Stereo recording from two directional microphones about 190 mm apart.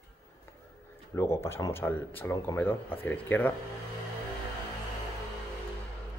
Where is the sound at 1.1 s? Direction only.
15° left (ahead or behind).